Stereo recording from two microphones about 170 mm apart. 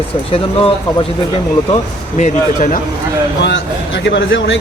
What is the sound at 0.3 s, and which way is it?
Speech, 35° left (ahead or behind).